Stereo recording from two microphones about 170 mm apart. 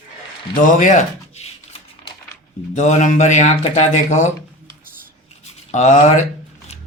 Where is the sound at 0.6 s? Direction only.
50° left (ahead or behind).